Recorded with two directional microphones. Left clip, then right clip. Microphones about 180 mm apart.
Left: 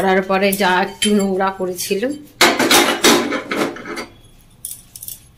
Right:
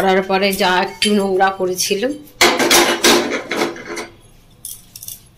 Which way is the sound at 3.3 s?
15° left (ahead or behind).